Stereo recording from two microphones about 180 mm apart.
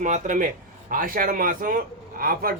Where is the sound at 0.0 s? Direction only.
45° right (ahead or behind).